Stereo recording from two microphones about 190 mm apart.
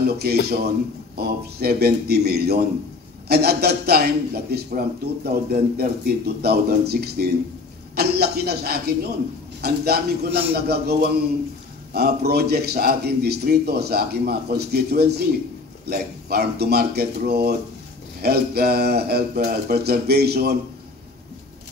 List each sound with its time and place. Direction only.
0.0 s a man's voice: 55° right (ahead or behind)